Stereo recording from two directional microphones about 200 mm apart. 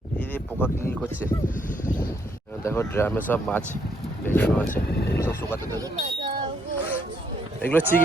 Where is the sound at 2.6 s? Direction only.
10° left (ahead or behind).